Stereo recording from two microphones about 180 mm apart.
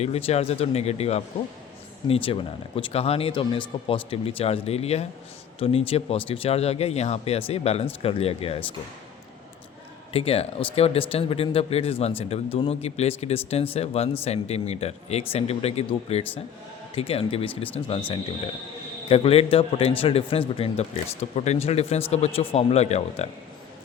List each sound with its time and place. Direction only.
0.0 s speech: 35° left (ahead or behind)
10.1 s speech: 35° left (ahead or behind)
19.0 s speech: 35° left (ahead or behind)